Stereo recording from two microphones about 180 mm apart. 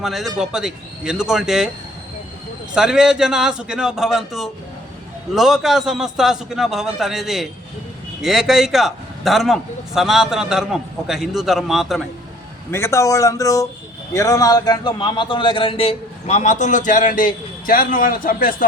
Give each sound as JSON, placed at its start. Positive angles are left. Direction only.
{"t": 0.0, "sound": "a man's voice", "side_deg": 0}
{"t": 2.7, "sound": "a man's voice", "side_deg": -5}
{"t": 12.7, "sound": "a man's voice", "side_deg": 15}